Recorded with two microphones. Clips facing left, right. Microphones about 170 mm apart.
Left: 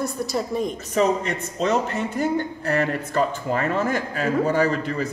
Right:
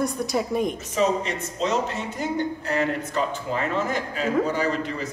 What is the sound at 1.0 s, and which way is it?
A man's voice, 55° left (ahead or behind).